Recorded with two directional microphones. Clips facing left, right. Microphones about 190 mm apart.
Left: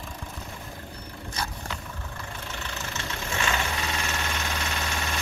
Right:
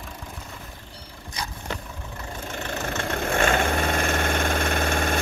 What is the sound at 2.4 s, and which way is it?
Vehicle, 45° right (ahead or behind).